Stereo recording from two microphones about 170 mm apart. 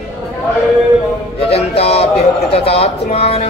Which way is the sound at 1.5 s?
35° left (ahead or behind).